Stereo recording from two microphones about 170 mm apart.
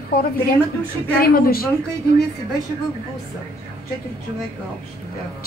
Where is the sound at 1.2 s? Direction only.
60° left (ahead or behind).